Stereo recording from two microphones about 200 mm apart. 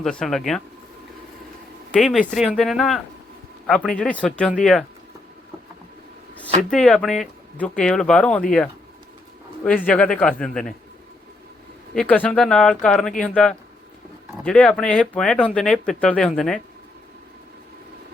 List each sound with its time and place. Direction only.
0.0 s speech: 5° left (ahead or behind)
1.9 s speech: centre (ahead or behind)
6.7 s speech: 5° left (ahead or behind)
11.9 s speech: 5° left (ahead or behind)